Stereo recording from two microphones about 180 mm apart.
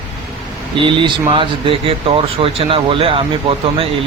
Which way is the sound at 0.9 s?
25° right (ahead or behind).